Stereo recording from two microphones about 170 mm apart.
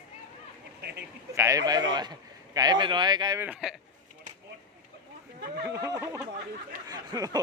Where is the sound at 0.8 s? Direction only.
75° right (ahead or behind).